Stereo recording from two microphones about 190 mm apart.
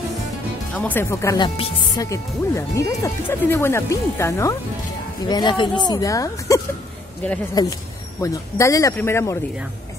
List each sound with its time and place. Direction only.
0.7 s speech: 10° left (ahead or behind)